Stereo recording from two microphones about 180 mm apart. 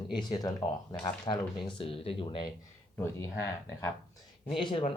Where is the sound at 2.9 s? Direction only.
15° left (ahead or behind).